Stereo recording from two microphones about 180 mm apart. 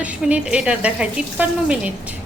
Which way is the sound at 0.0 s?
5° right (ahead or behind).